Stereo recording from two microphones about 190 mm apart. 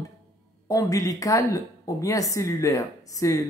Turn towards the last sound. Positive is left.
turn(degrees=15)  # may be behind; listen again after turning